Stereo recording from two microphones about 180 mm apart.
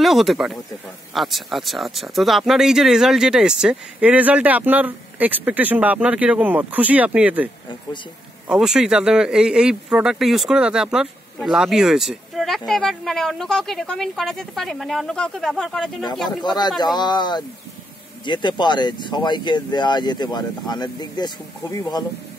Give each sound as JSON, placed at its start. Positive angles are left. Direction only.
{"t": 0.0, "sound": "speech", "side_deg": 0}
{"t": 8.5, "sound": "speech", "side_deg": -5}
{"t": 16.4, "sound": "speech", "side_deg": 25}